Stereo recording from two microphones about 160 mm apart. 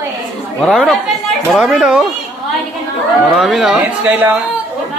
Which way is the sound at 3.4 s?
Centre (ahead or behind).